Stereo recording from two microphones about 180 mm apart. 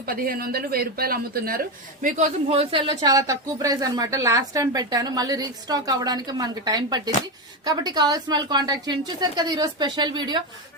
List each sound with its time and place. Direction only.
0.0 s speech: 55° right (ahead or behind); by 10.4 s 25° right (ahead or behind)